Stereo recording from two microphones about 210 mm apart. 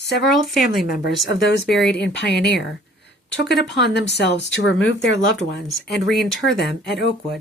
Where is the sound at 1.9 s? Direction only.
55° left (ahead or behind).